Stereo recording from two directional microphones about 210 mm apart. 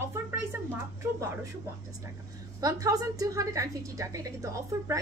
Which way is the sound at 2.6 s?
15° right (ahead or behind).